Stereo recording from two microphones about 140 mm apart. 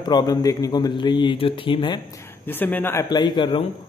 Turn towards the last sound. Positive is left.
turn(degrees=35)  # may be behind; listen again after turning